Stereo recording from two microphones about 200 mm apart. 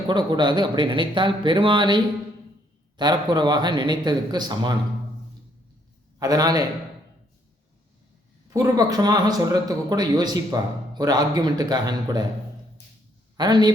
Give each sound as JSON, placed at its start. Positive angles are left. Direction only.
{"t": 0.1, "sound": "speech", "side_deg": -20}
{"t": 3.0, "sound": "speech", "side_deg": -20}
{"t": 6.1, "sound": "a man's voice", "side_deg": -20}
{"t": 8.4, "sound": "speech", "side_deg": -15}
{"t": 13.3, "sound": "speech", "side_deg": -20}